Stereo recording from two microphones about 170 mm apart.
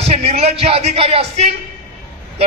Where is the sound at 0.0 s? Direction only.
40° right (ahead or behind).